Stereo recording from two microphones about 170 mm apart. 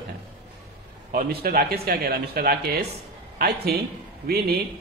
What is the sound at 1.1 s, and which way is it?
A man's voice, 60° right (ahead or behind).